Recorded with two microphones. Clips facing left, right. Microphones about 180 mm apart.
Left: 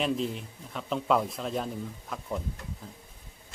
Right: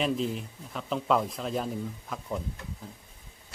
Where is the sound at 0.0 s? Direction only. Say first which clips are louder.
Right 1 dB; centre (ahead or behind).